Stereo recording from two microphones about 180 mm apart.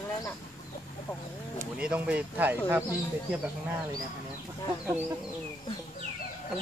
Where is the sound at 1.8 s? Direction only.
5° right (ahead or behind).